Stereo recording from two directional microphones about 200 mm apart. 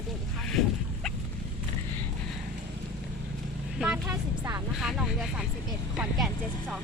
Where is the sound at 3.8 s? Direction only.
5° right (ahead or behind).